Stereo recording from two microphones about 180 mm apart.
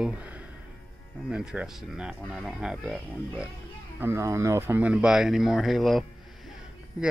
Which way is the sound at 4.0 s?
15° right (ahead or behind).